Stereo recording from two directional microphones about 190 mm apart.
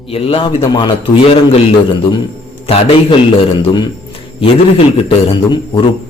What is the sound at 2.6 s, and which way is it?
Speech, 30° left (ahead or behind).